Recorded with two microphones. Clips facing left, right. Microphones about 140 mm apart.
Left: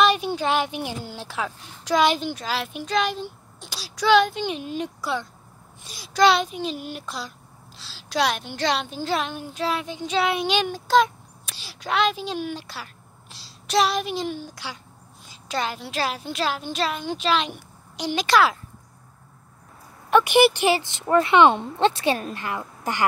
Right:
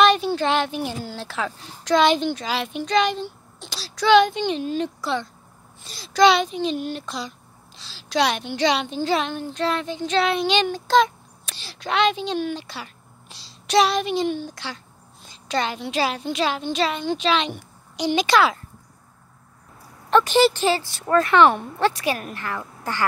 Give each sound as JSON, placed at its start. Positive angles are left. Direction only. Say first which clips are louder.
{"t": 0.0, "sound": "speech", "louder": "right 3 dB", "side_deg": 10}
{"t": 20.1, "sound": "speech", "louder": "even", "side_deg": 15}